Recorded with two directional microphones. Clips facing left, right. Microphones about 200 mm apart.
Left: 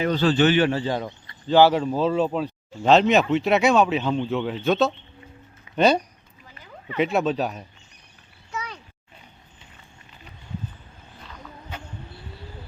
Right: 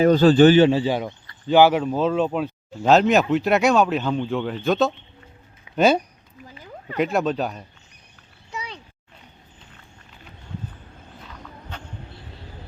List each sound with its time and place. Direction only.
0.0 s a man's voice: 40° right (ahead or behind)
0.6 s speech: 15° right (ahead or behind)
1.8 s speech: centre (ahead or behind)